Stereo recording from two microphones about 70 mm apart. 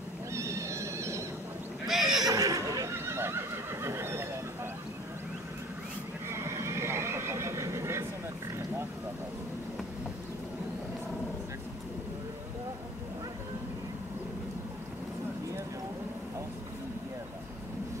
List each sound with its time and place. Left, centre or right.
0.3 s neigh: right
1.9 s neigh: centre
2.3 s neigh: right
3.1 s neigh: right
6.2 s neigh: right